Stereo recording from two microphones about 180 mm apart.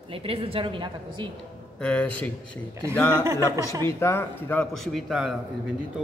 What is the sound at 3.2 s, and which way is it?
Speech, 15° right (ahead or behind).